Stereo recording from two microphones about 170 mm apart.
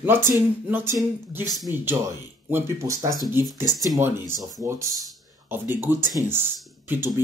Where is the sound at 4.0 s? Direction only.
15° right (ahead or behind).